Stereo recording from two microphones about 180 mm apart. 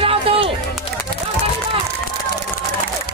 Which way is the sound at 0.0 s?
30° right (ahead or behind).